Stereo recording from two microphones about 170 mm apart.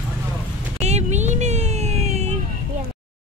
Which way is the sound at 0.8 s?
40° right (ahead or behind).